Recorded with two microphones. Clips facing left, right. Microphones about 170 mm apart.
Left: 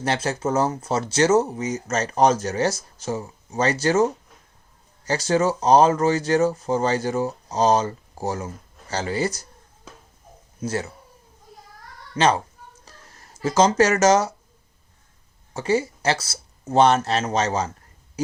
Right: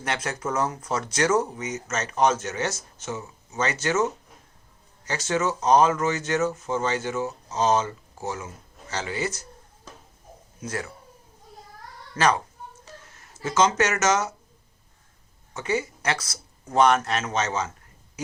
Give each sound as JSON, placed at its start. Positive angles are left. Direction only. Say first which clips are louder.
{"t": 0.0, "sound": "speech", "louder": "left 5 dB", "side_deg": 30}
{"t": 10.6, "sound": "speech", "louder": "left 5 dB", "side_deg": 30}
{"t": 12.1, "sound": "speech", "louder": "left 3 dB", "side_deg": 25}
{"t": 12.8, "sound": "a sound", "louder": "right 3 dB", "side_deg": 35}
{"t": 13.4, "sound": "speech", "louder": "left 4 dB", "side_deg": 35}
{"t": 15.5, "sound": "speech", "louder": "left 5 dB", "side_deg": 30}